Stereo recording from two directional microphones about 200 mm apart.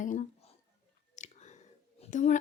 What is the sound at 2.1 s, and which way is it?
Speech, 40° left (ahead or behind).